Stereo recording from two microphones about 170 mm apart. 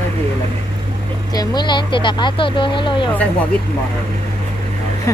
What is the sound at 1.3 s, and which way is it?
Speech, 25° left (ahead or behind).